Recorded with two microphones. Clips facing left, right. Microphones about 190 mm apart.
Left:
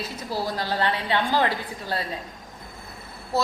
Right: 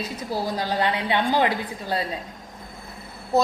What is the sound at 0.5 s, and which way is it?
Speech, 15° right (ahead or behind).